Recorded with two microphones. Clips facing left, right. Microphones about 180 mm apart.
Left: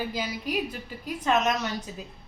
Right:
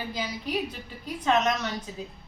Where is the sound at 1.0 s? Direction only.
5° left (ahead or behind).